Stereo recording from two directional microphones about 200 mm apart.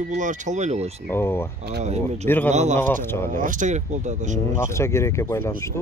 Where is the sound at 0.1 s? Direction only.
40° right (ahead or behind).